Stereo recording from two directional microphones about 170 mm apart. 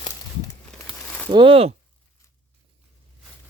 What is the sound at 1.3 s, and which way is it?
Speech, 30° right (ahead or behind).